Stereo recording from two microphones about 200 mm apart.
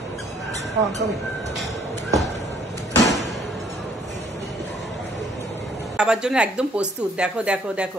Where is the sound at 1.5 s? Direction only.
Centre (ahead or behind).